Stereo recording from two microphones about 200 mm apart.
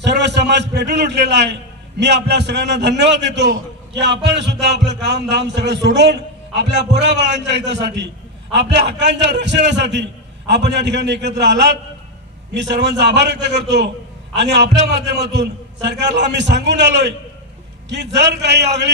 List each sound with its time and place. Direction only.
0.0 s a man's voice: 60° right (ahead or behind)